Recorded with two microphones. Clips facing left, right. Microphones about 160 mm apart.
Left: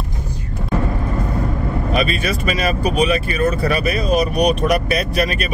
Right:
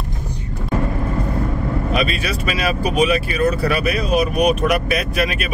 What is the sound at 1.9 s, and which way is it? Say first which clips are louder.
Speech: left 3 dB; centre (ahead or behind).